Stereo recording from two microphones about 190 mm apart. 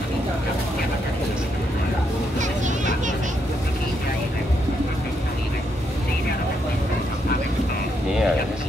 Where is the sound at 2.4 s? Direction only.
40° right (ahead or behind).